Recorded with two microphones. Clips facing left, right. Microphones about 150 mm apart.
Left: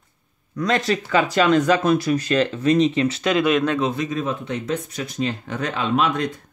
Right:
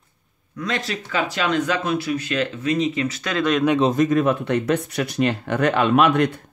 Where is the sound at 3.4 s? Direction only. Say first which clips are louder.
Even; 5° left (ahead or behind).